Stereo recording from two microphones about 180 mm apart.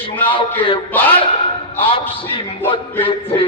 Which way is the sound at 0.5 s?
30° left (ahead or behind).